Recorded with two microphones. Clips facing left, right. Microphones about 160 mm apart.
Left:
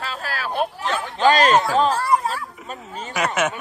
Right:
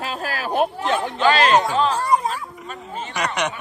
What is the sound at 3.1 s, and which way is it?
Speech, 5° left (ahead or behind).